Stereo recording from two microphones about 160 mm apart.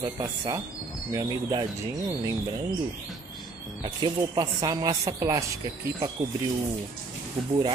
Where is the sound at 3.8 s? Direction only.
30° right (ahead or behind).